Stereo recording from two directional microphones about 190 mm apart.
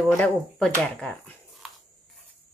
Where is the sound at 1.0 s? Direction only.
5° left (ahead or behind).